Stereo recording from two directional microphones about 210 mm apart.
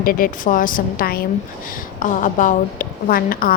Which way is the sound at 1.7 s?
40° left (ahead or behind).